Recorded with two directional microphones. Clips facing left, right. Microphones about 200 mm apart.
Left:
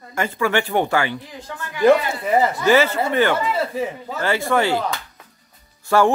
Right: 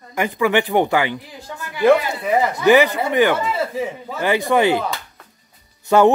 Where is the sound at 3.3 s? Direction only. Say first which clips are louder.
Even; centre (ahead or behind).